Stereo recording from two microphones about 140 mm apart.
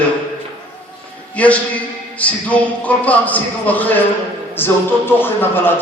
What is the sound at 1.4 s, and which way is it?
A man's voice, 10° left (ahead or behind).